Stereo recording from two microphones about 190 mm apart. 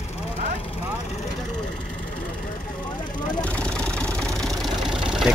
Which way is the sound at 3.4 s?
5° left (ahead or behind).